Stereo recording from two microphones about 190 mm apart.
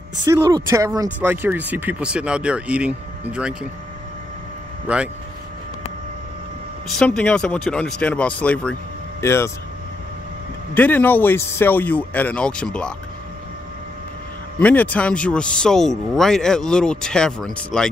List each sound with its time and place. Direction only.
0.2 s speech: 20° right (ahead or behind)
4.8 s speech: 5° right (ahead or behind)
6.9 s speech: 5° left (ahead or behind)
10.7 s speech: 10° left (ahead or behind)
14.6 s speech: 10° left (ahead or behind)